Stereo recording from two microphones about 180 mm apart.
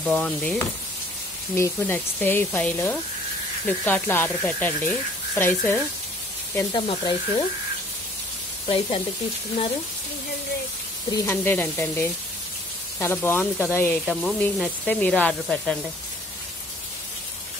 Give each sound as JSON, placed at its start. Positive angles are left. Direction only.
{"t": 0.0, "sound": "frying", "side_deg": 5}
{"t": 1.5, "sound": "speech", "side_deg": 10}
{"t": 6.7, "sound": "speech", "side_deg": 25}
{"t": 8.6, "sound": "speech", "side_deg": 30}
{"t": 11.1, "sound": "speech", "side_deg": 15}
{"t": 14.0, "sound": "speech", "side_deg": 5}